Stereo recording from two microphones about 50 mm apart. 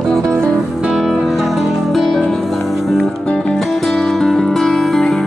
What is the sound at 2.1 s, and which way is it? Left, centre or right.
Music, centre.